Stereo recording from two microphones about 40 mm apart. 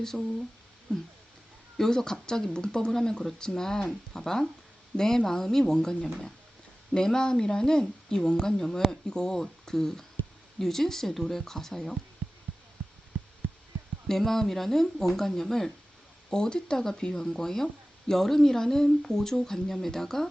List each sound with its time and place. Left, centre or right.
0.0 s speech: centre
0.9 s speech: left
1.8 s speech: centre
14.1 s speech: centre